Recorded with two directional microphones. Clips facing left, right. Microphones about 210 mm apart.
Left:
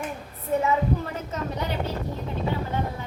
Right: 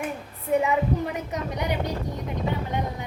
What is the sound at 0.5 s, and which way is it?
A woman's voice, 15° right (ahead or behind).